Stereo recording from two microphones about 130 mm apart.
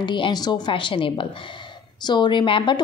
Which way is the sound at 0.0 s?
35° left (ahead or behind).